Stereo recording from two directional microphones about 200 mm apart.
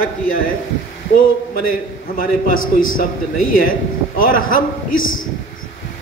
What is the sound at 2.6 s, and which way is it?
Speech, 90° left.